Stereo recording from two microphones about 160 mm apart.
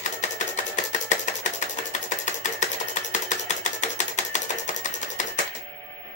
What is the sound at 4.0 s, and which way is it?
Music, 50° left (ahead or behind).